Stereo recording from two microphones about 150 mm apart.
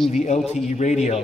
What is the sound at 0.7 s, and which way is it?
Speech, 50° left (ahead or behind).